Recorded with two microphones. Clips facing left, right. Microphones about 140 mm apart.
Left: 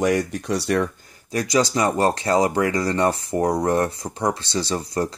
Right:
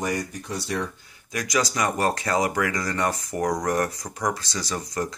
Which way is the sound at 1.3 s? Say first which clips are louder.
Left 5 dB; 30° left (ahead or behind).